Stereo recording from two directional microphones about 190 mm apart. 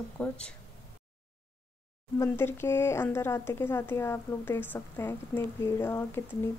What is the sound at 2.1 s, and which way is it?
Speech, 10° left (ahead or behind).